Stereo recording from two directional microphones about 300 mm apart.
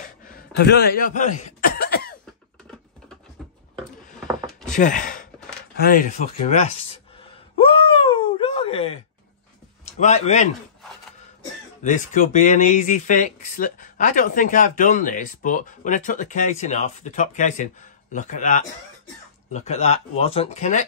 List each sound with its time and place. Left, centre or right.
0.0 s cough: left
4.6 s sigh: left
5.8 s speech: left
7.5 s a sound: centre
9.9 s speech: left
11.8 s speech: left